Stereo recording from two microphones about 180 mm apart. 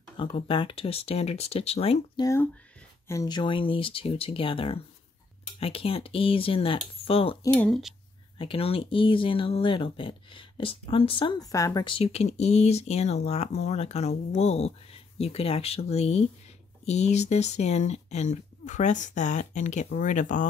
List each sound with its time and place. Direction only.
0.2 s speech: 30° left (ahead or behind)
3.1 s speech: 20° left (ahead or behind)
7.5 s speech: 5° left (ahead or behind)
8.4 s speech: 30° left (ahead or behind)